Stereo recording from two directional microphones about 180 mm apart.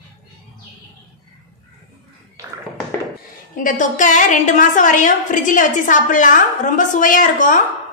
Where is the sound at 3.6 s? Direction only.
45° left (ahead or behind).